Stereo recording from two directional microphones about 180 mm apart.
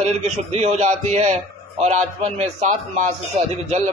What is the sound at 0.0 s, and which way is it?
Speech, 35° right (ahead or behind).